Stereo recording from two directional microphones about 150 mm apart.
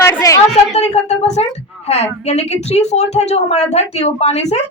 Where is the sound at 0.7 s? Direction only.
50° left (ahead or behind).